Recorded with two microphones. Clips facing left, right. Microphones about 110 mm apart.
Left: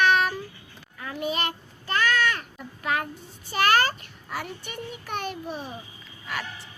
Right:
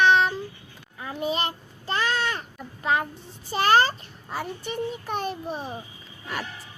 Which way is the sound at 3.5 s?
30° right (ahead or behind).